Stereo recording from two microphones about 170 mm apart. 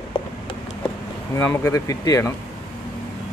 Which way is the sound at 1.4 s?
15° left (ahead or behind).